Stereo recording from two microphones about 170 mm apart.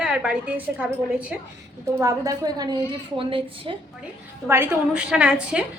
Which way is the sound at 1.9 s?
20° right (ahead or behind).